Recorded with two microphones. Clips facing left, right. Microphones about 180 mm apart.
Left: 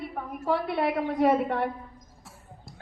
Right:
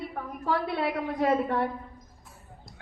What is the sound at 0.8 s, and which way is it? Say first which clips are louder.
Speech: left 3 dB; 60° left (ahead or behind).